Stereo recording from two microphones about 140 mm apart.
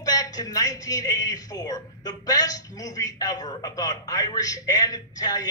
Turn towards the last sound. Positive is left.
turn(degrees=25)  # may be behind; listen again after turning